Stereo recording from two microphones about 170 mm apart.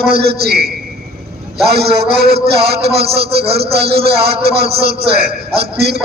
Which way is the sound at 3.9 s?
70° right (ahead or behind).